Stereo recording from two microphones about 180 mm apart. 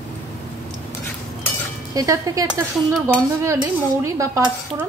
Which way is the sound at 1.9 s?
20° right (ahead or behind).